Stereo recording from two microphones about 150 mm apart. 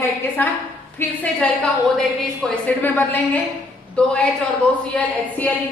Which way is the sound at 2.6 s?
10° left (ahead or behind).